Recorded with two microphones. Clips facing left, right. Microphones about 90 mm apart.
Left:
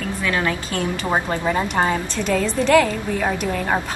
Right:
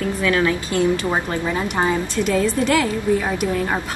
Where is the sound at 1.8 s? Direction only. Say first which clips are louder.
Right 1 dB; 10° right (ahead or behind).